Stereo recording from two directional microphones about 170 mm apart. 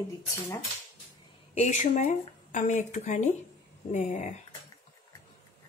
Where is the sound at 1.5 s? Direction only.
40° left (ahead or behind).